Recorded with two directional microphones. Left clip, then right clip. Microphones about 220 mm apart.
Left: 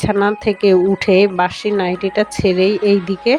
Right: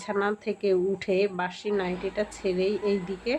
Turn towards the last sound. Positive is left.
turn(degrees=40)  # may be behind; listen again after turning